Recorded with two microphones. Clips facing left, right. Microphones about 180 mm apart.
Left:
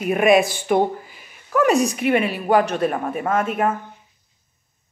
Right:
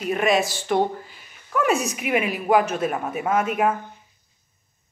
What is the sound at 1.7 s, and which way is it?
Speech, 35° left (ahead or behind).